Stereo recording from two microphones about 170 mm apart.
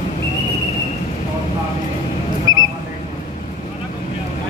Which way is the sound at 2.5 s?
20° right (ahead or behind).